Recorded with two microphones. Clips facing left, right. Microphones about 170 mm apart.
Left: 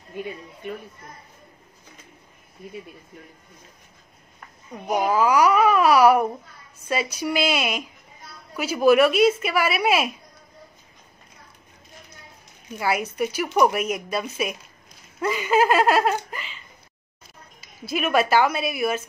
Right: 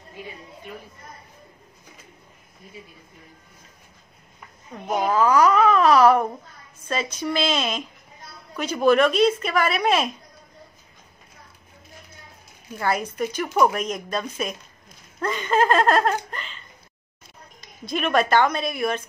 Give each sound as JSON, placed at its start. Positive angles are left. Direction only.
{"t": 0.2, "sound": "a woman's voice", "side_deg": 55}
{"t": 4.8, "sound": "speech", "side_deg": 10}
{"t": 12.7, "sound": "speech", "side_deg": 10}